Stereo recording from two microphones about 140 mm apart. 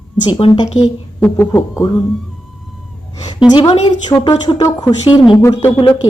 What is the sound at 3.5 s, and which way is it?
Speech, 35° left (ahead or behind).